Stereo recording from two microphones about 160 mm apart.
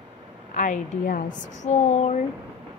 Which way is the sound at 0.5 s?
55° left (ahead or behind).